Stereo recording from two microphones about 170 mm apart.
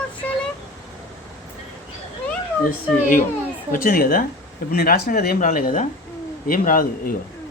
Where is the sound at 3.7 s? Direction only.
55° left (ahead or behind).